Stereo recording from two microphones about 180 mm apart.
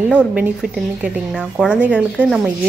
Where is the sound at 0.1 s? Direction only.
5° right (ahead or behind).